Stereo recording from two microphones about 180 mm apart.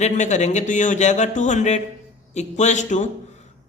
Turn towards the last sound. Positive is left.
turn(degrees=40)  # may be behind; listen again after turning